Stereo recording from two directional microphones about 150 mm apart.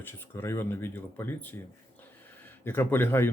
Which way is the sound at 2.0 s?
15° left (ahead or behind).